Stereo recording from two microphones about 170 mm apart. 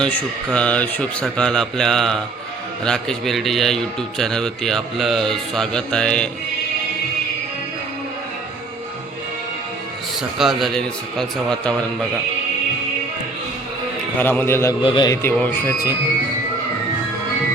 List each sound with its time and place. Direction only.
0.0 s speech: 5° left (ahead or behind)
10.2 s speech: centre (ahead or behind)
14.2 s a man's voice: 10° left (ahead or behind)
14.8 s a man's voice: 30° left (ahead or behind)
15.1 s a man's voice: 15° left (ahead or behind)